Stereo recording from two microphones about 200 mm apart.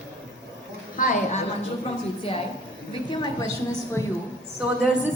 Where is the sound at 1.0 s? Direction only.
40° left (ahead or behind).